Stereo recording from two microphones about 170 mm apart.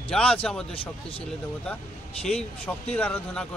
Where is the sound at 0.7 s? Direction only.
35° left (ahead or behind).